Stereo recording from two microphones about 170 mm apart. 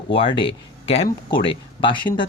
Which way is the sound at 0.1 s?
30° left (ahead or behind).